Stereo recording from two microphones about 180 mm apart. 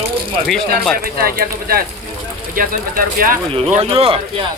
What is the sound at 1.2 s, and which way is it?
Speech, 55° right (ahead or behind).